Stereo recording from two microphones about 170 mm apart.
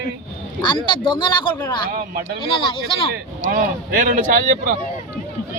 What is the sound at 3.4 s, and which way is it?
Speech, 55° right (ahead or behind).